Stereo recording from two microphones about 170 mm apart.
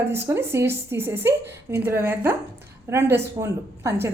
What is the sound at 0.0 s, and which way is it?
A woman's voice, 15° right (ahead or behind).